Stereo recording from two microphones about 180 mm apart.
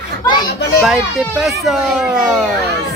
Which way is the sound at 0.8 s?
Centre (ahead or behind).